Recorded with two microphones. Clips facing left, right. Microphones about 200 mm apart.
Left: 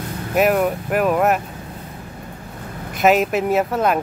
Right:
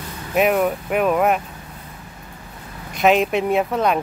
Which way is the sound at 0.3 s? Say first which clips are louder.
Left 1 dB; centre (ahead or behind).